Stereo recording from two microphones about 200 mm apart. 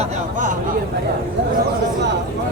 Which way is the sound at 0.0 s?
40° right (ahead or behind).